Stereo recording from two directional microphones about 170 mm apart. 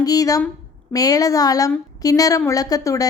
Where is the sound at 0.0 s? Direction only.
20° left (ahead or behind).